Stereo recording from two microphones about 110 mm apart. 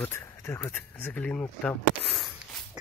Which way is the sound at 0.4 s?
20° left (ahead or behind).